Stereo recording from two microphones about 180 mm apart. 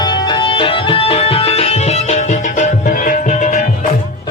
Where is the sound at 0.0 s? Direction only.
25° left (ahead or behind); by 3.6 s 40° left (ahead or behind).